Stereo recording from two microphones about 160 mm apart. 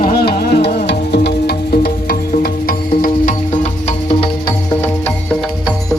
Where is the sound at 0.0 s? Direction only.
70° left (ahead or behind).